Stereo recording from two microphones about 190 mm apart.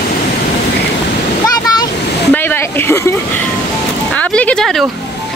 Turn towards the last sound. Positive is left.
turn(degrees=0)  # may be behind; listen again after turning